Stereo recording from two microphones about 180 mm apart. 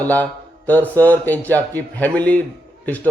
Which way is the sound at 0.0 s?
10° left (ahead or behind).